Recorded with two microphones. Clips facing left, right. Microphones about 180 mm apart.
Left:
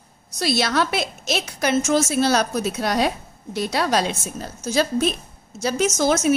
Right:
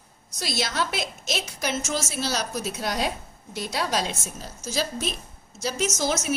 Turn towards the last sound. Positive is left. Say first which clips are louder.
# left 7 dB
turn(degrees=55)  # may be behind; listen again after turning